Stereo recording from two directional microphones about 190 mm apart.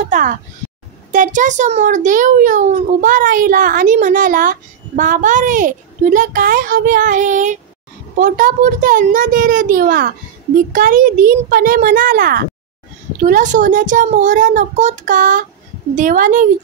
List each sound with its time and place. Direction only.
0.0 s a child's voice: 40° right (ahead or behind)